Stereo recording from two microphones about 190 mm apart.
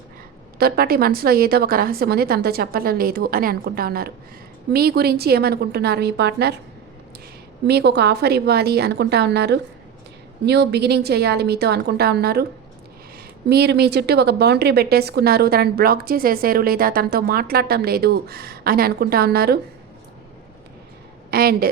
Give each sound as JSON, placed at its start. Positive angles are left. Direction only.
{"t": 0.6, "sound": "a woman's voice", "side_deg": -55}
{"t": 7.7, "sound": "a woman's voice", "side_deg": -60}
{"t": 13.5, "sound": "a woman's voice", "side_deg": -60}
{"t": 21.2, "sound": "a woman's voice", "side_deg": -55}